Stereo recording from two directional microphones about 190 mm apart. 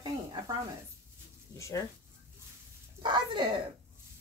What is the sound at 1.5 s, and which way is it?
Speech, 15° left (ahead or behind).